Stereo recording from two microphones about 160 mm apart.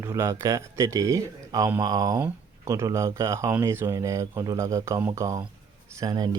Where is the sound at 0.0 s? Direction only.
20° right (ahead or behind).